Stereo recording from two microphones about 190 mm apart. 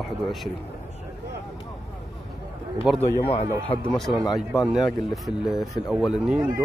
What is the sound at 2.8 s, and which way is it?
Speech, 5° right (ahead or behind).